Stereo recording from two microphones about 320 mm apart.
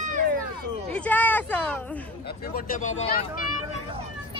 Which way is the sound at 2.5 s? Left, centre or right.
Left.